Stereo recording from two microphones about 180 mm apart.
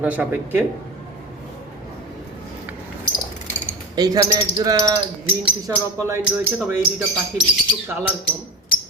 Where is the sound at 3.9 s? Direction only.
20° right (ahead or behind).